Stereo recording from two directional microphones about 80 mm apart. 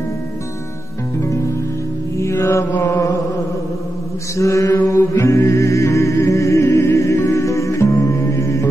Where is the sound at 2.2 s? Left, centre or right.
Left.